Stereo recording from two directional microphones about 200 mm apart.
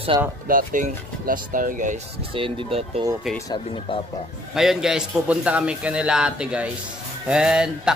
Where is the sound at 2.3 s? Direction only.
25° right (ahead or behind).